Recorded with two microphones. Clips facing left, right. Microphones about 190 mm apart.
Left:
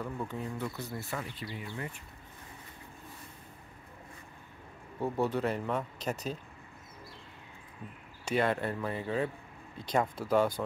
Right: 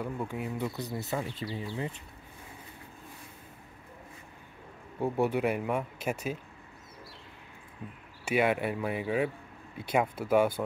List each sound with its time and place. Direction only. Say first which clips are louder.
0.0 s speech: right 2 dB; 10° right (ahead or behind)
5.0 s speech: right 3 dB; 15° right (ahead or behind)
8.3 s speech: right 2 dB; 10° right (ahead or behind)